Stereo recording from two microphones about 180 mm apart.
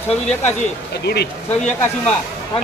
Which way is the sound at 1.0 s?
65° left (ahead or behind).